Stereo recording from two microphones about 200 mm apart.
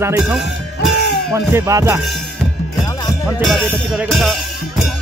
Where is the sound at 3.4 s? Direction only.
Centre (ahead or behind).